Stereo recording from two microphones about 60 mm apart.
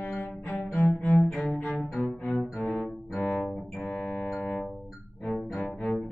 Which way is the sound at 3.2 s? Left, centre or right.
Centre.